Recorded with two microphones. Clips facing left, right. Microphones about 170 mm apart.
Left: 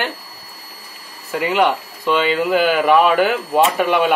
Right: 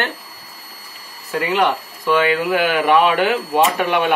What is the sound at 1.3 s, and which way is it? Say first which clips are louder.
Speech: left 1 dB; 15° left (ahead or behind).